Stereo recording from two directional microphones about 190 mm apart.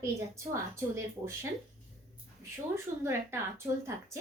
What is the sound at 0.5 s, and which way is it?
Speech, 15° right (ahead or behind).